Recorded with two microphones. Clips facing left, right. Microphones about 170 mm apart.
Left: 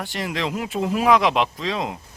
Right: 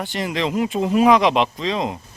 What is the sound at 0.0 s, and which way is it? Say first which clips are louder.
Speech: right 3 dB; centre (ahead or behind).